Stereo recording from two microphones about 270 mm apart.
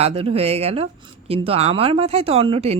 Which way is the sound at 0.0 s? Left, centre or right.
Right.